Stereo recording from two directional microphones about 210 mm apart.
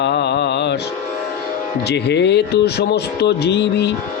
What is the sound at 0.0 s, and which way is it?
Mantra, 55° left (ahead or behind).